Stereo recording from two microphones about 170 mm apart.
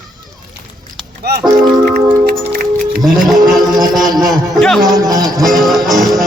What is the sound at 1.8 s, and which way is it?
Music, 60° right (ahead or behind).